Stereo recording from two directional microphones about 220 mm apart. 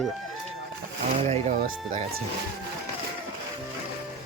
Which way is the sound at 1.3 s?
35° right (ahead or behind).